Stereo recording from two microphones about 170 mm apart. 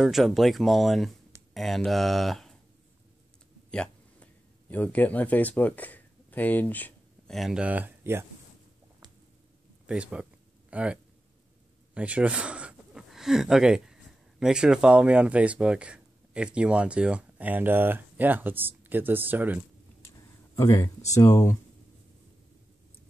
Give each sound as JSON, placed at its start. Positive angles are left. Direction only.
{"t": 0.0, "sound": "speech", "side_deg": 0}
{"t": 3.7, "sound": "a sound", "side_deg": 5}
{"t": 7.3, "sound": "speech", "side_deg": -5}
{"t": 9.8, "sound": "speech", "side_deg": -5}
{"t": 11.9, "sound": "a sound", "side_deg": -5}
{"t": 14.4, "sound": "speech", "side_deg": -5}
{"t": 20.5, "sound": "speech", "side_deg": 15}